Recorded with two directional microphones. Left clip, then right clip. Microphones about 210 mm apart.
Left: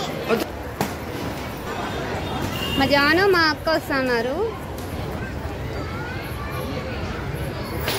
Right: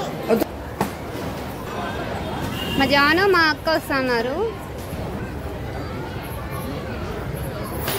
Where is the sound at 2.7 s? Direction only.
5° right (ahead or behind).